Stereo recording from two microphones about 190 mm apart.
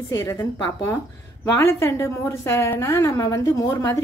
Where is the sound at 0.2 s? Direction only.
15° left (ahead or behind).